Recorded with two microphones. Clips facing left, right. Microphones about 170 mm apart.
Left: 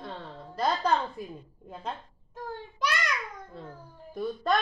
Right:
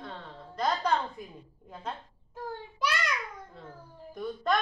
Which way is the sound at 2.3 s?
10° right (ahead or behind).